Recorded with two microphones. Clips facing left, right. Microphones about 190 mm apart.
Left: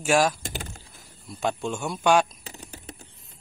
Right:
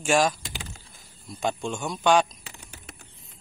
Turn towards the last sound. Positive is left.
turn(degrees=35)  # may be behind; listen again after turning